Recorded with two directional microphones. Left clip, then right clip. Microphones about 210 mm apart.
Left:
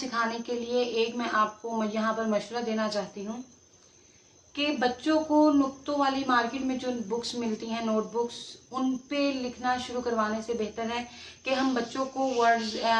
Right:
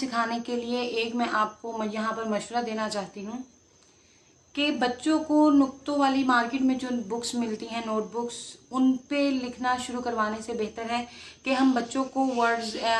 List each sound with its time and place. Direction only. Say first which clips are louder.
0.1 s speech: even; 55° right (ahead or behind)
4.5 s speech: right 1 dB; 60° right (ahead or behind)